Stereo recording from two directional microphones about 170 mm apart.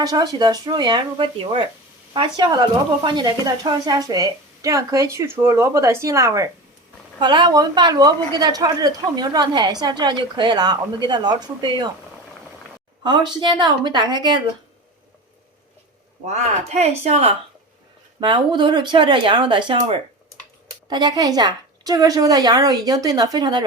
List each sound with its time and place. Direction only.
0.0 s a woman's voice: 25° right (ahead or behind)
13.0 s a woman's voice: 25° right (ahead or behind)
16.2 s speech: 40° right (ahead or behind)
18.2 s a woman's voice: 25° right (ahead or behind)